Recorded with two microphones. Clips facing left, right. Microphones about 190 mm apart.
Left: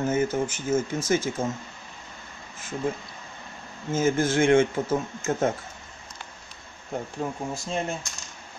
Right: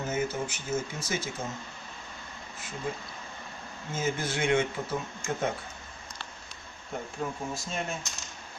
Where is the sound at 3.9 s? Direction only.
50° left (ahead or behind).